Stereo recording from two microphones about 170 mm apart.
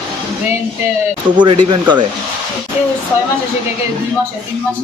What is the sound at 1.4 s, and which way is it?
Speech, 30° right (ahead or behind).